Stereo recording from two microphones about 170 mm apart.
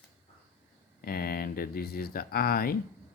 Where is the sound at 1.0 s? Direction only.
65° left (ahead or behind).